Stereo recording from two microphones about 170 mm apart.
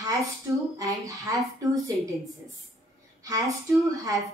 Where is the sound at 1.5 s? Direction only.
20° right (ahead or behind).